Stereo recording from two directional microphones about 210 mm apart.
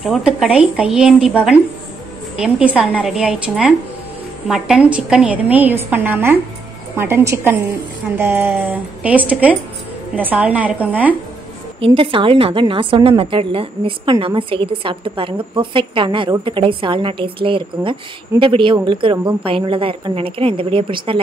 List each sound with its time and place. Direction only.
0.0 s a woman's voice: centre (ahead or behind)
11.8 s a woman's voice: 25° right (ahead or behind)